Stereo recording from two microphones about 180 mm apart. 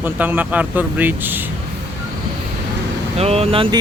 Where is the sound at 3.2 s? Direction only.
35° right (ahead or behind).